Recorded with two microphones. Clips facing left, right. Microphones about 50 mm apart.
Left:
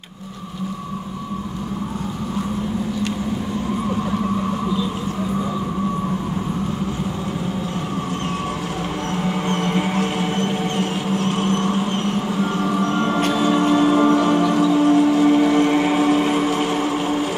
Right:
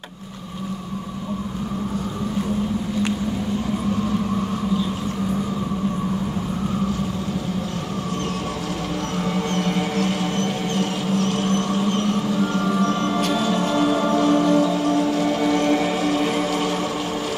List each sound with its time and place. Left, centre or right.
9.5 s music: left